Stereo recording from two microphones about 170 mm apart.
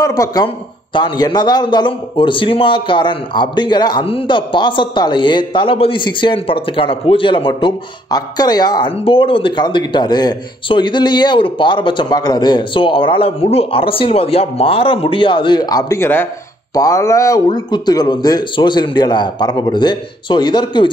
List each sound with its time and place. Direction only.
0.0 s a man's voice: 20° left (ahead or behind)